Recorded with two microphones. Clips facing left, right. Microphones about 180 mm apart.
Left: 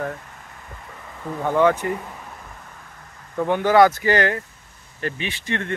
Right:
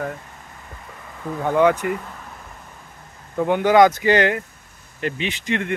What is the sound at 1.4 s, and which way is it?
Speech, 15° right (ahead or behind).